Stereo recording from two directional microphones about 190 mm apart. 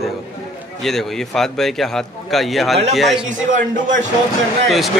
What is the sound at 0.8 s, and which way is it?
A man's voice, centre (ahead or behind).